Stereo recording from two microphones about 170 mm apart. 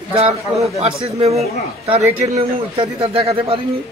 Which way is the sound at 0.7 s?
35° right (ahead or behind).